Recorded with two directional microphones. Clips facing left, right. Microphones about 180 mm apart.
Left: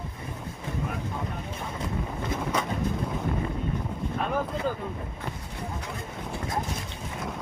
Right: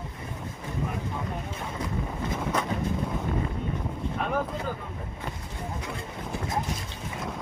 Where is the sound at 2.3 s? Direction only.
Centre (ahead or behind).